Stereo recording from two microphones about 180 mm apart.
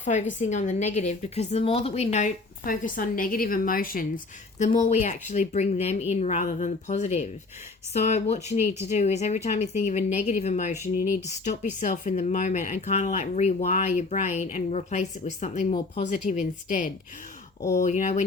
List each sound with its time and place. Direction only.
0.0 s speech: 45° left (ahead or behind)
4.5 s speech: 40° left (ahead or behind)